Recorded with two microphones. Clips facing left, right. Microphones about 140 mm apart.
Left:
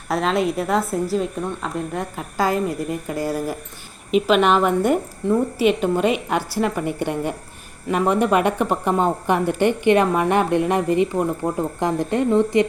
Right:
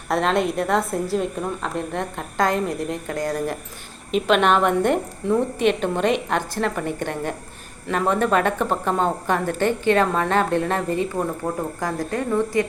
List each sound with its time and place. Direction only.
0.1 s a woman's voice: centre (ahead or behind); by 12.6 s 20° left (ahead or behind)